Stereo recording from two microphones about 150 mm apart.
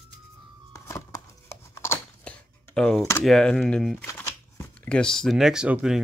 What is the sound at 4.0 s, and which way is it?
Shuffling cards, 15° left (ahead or behind).